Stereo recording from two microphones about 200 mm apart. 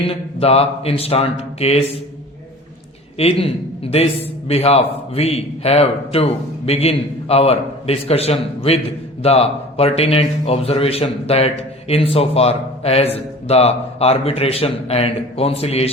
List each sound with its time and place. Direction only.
0.1 s a man's voice: 30° left (ahead or behind)
3.4 s a man's voice: 30° left (ahead or behind)